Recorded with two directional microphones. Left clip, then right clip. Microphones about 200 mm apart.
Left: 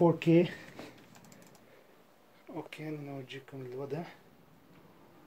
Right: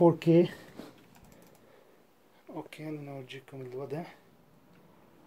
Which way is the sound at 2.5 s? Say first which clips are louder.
Right 1 dB; 20° right (ahead or behind).